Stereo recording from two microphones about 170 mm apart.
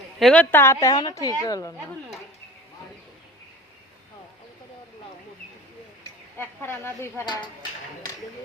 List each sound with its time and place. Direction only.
0.2 s a woman's voice: 5° left (ahead or behind); by 1.7 s 20° left (ahead or behind)
6.3 s a woman's voice: 10° left (ahead or behind)